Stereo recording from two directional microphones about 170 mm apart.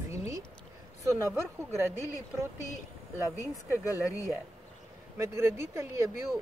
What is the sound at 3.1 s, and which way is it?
Speech, 15° right (ahead or behind).